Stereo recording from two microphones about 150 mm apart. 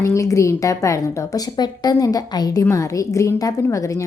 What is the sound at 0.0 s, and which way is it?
A woman's voice, 20° left (ahead or behind).